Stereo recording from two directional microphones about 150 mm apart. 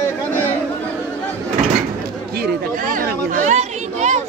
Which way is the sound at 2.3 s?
80° right.